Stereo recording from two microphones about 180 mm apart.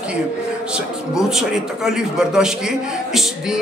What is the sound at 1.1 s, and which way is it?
A man's voice, centre (ahead or behind).